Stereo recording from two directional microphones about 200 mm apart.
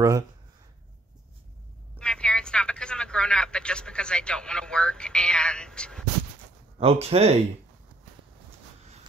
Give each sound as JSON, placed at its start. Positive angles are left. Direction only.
{"t": 2.0, "sound": "speech", "side_deg": 5}
{"t": 6.8, "sound": "speech", "side_deg": -30}